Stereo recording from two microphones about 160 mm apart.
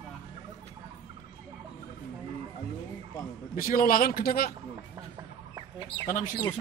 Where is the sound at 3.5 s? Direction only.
60° left (ahead or behind).